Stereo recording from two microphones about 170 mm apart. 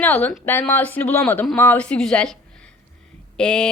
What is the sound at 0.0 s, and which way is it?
Speech, 10° left (ahead or behind).